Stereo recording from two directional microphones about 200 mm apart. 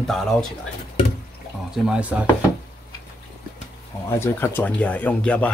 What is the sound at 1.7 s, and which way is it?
Speech, 5° right (ahead or behind).